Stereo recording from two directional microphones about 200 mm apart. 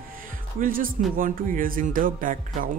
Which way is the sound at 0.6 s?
45° right (ahead or behind).